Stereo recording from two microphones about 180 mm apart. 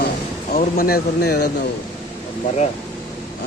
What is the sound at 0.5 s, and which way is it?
Speech, 55° left (ahead or behind).